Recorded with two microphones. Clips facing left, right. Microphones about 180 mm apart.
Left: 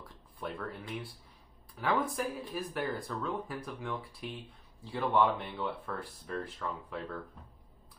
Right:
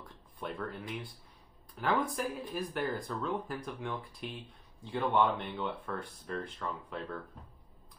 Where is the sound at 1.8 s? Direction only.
Centre (ahead or behind).